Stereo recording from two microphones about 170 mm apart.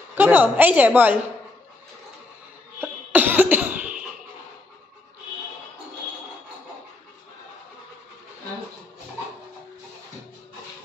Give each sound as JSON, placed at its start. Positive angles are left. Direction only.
{"t": 0.1, "sound": "a woman's voice", "side_deg": -10}
{"t": 2.8, "sound": "cough", "side_deg": -10}